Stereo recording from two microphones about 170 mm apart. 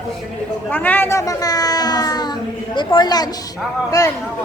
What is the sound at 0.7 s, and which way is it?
A child's voice, 10° left (ahead or behind).